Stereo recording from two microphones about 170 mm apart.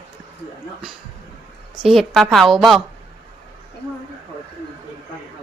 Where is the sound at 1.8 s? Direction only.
Centre (ahead or behind).